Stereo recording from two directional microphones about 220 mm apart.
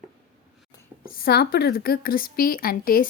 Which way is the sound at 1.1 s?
45° left (ahead or behind).